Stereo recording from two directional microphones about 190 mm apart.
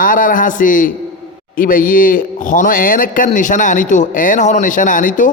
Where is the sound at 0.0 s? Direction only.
45° left (ahead or behind).